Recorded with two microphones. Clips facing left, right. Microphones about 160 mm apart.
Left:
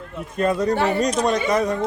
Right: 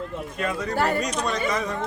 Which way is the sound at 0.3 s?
40° left (ahead or behind).